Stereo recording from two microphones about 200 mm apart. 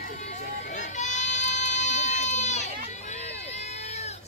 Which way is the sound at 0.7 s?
35° left (ahead or behind).